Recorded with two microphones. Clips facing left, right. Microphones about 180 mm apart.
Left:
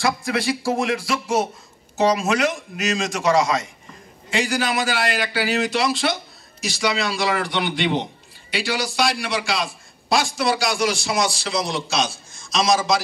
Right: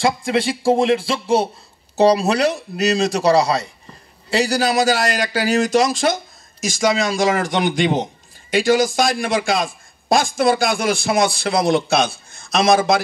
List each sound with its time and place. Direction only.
0.0 s a man's voice: 25° right (ahead or behind); by 13.0 s 60° right (ahead or behind)